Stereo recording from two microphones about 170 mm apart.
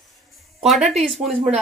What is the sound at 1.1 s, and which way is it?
Speech, centre (ahead or behind).